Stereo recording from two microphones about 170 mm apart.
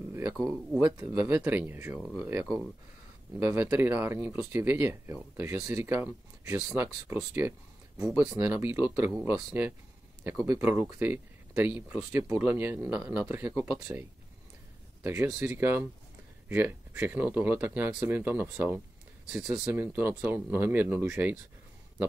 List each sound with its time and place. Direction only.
0.1 s speech: 20° right (ahead or behind)
15.0 s speech: 15° right (ahead or behind)